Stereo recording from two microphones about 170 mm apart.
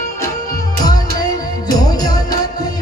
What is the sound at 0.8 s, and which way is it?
Music, 20° left (ahead or behind).